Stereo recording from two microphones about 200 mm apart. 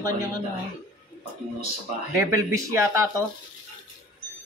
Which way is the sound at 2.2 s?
15° right (ahead or behind).